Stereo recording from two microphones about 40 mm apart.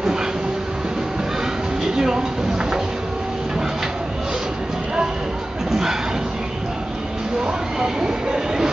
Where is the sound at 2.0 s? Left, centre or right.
Centre.